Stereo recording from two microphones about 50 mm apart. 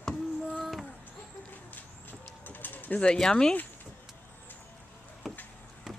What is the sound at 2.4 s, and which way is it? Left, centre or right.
Bird, left.